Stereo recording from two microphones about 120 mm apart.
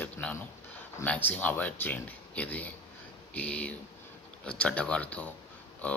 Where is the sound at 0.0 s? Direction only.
10° left (ahead or behind).